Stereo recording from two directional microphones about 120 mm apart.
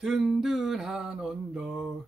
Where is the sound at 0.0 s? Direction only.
5° right (ahead or behind).